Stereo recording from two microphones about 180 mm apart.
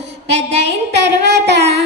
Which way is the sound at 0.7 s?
70° right (ahead or behind).